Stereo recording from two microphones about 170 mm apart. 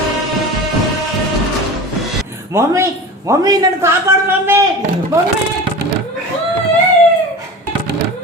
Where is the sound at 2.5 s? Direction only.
15° right (ahead or behind).